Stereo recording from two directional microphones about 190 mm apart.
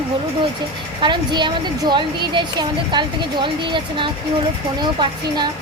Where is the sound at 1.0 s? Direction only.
25° right (ahead or behind).